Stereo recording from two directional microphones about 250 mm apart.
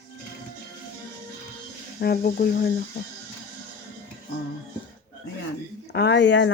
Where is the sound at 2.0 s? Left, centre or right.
Left.